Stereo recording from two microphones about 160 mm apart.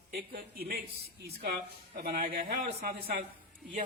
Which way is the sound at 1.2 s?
80° right.